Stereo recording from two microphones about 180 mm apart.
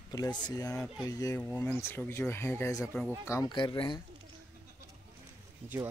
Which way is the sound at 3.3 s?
20° left (ahead or behind).